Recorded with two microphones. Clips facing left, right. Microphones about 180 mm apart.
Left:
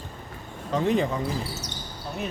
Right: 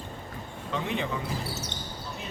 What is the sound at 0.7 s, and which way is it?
Speech, 40° left (ahead or behind).